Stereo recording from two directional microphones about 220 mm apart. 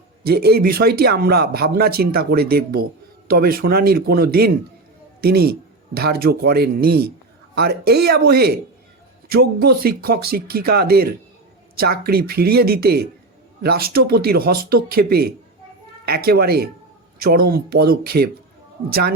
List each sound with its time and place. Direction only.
0.3 s a man's voice: 45° right (ahead or behind)